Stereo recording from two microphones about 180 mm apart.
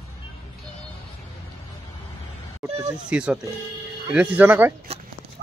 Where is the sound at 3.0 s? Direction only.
5° right (ahead or behind).